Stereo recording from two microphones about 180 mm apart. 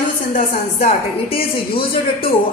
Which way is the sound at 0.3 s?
50° left (ahead or behind).